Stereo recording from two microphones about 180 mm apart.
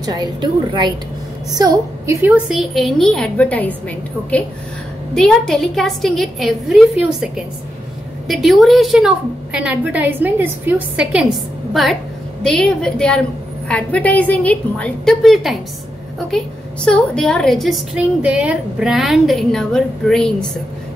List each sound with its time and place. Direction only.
0.0 s a woman's voice: 20° right (ahead or behind)
2.3 s a woman's voice: 5° right (ahead or behind)
5.1 s a woman's voice: centre (ahead or behind)